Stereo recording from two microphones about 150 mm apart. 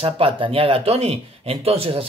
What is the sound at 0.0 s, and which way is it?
Speech, 40° right (ahead or behind).